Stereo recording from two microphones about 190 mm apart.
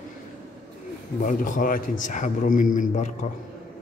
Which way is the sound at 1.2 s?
45° left (ahead or behind).